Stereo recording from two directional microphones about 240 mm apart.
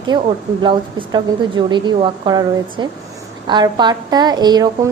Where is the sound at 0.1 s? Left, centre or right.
Centre.